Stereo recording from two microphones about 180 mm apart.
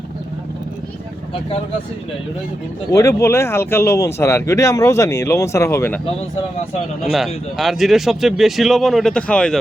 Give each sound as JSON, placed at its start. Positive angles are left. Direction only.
{"t": 1.3, "sound": "speech", "side_deg": 30}
{"t": 2.9, "sound": "speech", "side_deg": 15}
{"t": 7.0, "sound": "speech", "side_deg": 0}